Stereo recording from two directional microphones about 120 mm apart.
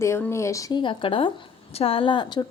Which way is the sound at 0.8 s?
45° left (ahead or behind).